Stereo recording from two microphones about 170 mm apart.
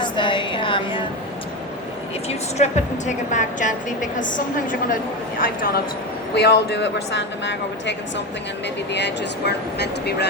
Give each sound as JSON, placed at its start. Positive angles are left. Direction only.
{"t": 0.0, "sound": "a sound", "side_deg": 30}
{"t": 2.6, "sound": "a woman's voice", "side_deg": 45}
{"t": 6.3, "sound": "speech", "side_deg": 75}